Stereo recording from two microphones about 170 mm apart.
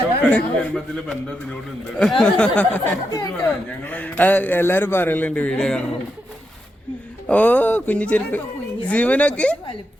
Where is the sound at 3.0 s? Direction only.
25° left (ahead or behind).